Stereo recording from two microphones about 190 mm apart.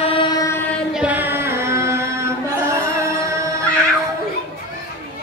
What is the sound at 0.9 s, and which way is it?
Music, 10° right (ahead or behind).